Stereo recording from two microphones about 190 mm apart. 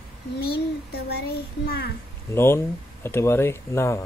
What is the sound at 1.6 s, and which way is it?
Speech, 55° left (ahead or behind).